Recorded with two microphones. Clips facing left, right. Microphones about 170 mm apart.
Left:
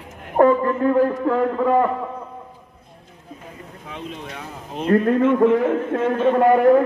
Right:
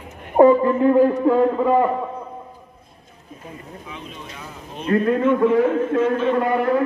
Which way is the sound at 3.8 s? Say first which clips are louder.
Left 7 dB; 75° left (ahead or behind).